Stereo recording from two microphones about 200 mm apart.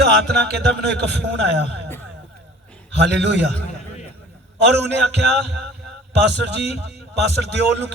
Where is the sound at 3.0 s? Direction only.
60° right (ahead or behind).